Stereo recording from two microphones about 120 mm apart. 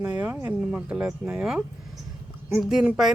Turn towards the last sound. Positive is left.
turn(degrees=-5)  # may be behind; listen again after turning